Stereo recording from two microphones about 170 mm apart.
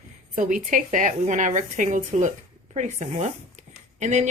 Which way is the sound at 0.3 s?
50° right (ahead or behind).